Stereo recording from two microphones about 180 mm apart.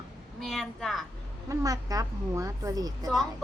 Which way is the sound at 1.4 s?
20° right (ahead or behind).